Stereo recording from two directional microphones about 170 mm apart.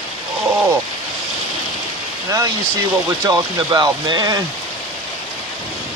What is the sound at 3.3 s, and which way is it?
Speech, 25° right (ahead or behind).